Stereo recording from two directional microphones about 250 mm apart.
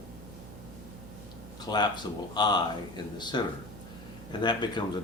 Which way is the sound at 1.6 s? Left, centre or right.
Centre.